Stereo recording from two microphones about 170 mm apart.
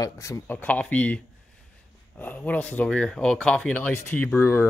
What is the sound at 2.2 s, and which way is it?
Speech, 10° left (ahead or behind).